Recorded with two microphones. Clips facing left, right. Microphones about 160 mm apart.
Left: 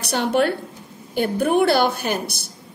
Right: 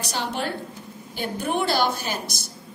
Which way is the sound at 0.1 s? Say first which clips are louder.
Left 10 dB; 60° left (ahead or behind).